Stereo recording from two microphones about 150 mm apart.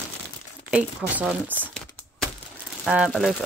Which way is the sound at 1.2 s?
10° right (ahead or behind).